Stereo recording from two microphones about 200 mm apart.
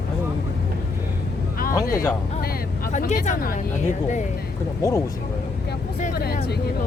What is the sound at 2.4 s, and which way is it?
Speech, 50° left (ahead or behind).